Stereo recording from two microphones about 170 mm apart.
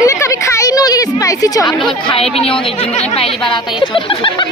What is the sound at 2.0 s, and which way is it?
A woman's voice, 35° left (ahead or behind).